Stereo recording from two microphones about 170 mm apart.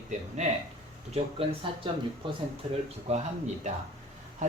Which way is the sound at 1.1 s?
35° right (ahead or behind).